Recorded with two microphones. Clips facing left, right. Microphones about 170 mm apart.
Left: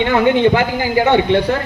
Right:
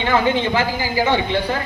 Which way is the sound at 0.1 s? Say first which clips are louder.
Left 4 dB; 60° left (ahead or behind).